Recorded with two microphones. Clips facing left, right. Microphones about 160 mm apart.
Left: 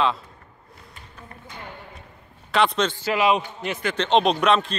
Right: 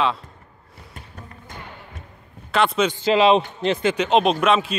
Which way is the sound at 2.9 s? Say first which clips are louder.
Right 6 dB; 25° right (ahead or behind).